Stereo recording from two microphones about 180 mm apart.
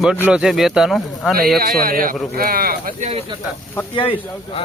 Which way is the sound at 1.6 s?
55° right (ahead or behind).